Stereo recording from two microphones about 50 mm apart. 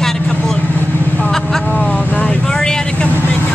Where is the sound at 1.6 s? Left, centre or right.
Left.